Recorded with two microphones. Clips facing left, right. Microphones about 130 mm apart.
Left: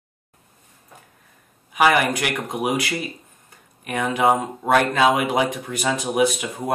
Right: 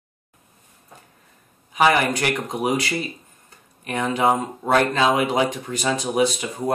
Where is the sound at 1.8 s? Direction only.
10° left (ahead or behind).